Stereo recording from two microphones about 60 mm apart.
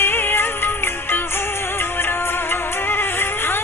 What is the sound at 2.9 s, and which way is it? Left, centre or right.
Music, left.